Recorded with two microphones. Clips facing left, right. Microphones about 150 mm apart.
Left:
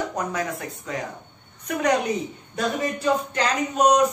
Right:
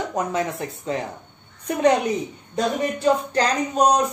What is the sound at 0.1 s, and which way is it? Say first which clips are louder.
Speech: right 3 dB; 25° right (ahead or behind).